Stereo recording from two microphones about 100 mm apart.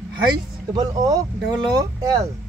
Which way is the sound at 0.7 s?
40° right (ahead or behind).